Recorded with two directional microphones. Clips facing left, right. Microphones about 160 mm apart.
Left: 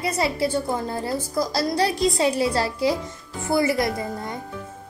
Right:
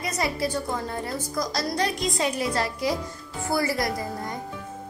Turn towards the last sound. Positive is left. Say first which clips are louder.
# left 2 dB
turn(degrees=25)  # may be behind; listen again after turning